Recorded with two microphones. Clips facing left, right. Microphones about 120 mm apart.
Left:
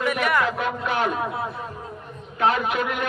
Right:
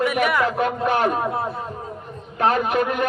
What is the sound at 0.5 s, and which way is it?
Speech, 40° right (ahead or behind).